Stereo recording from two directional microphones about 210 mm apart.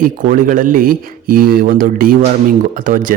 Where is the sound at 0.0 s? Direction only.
40° right (ahead or behind).